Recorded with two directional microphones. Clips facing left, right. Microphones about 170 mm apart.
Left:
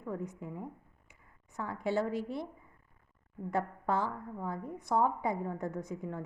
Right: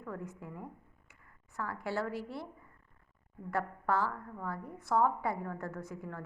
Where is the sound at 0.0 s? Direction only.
20° left (ahead or behind).